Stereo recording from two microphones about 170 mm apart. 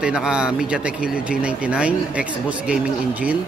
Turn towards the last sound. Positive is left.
turn(degrees=-10)  # may be behind; listen again after turning